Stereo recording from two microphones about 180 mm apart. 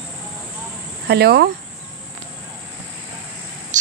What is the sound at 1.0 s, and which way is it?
Speech, 65° right (ahead or behind).